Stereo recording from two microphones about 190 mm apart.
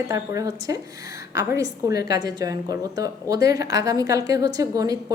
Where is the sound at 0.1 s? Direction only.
20° right (ahead or behind).